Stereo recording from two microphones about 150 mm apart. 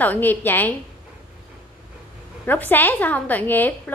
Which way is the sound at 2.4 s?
10° left (ahead or behind).